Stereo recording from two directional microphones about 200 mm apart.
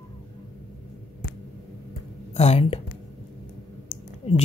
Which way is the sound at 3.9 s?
30° left (ahead or behind).